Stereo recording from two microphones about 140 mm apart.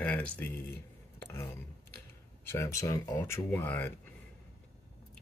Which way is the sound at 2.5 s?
20° left (ahead or behind).